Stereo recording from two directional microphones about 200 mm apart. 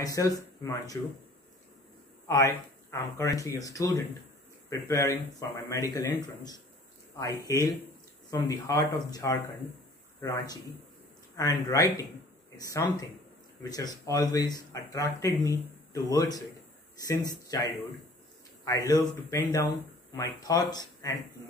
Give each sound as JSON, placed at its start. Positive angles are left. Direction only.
{"t": 0.0, "sound": "speech", "side_deg": 15}
{"t": 2.2, "sound": "speech", "side_deg": 15}